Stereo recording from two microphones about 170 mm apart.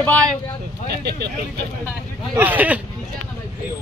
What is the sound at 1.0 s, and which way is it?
Speech, 80° right.